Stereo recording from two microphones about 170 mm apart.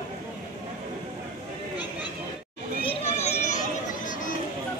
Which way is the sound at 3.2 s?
40° left (ahead or behind).